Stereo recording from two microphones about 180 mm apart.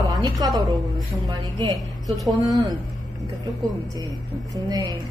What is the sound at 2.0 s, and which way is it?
Speech, centre (ahead or behind).